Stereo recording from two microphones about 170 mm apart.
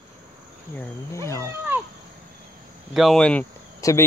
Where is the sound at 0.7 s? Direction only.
10° left (ahead or behind).